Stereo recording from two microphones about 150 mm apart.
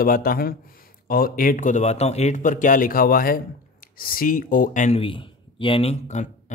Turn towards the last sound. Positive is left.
turn(degrees=45)  # may be behind; listen again after turning